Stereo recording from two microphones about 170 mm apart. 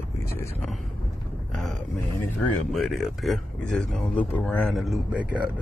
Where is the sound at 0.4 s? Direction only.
15° left (ahead or behind).